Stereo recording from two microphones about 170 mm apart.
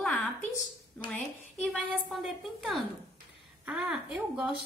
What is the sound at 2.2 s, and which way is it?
A woman's voice, centre (ahead or behind).